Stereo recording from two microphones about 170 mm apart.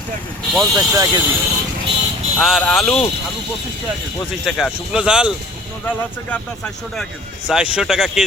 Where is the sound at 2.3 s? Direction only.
Centre (ahead or behind).